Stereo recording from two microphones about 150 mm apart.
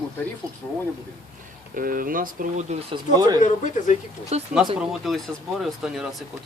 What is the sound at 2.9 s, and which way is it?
Speech, 30° right (ahead or behind).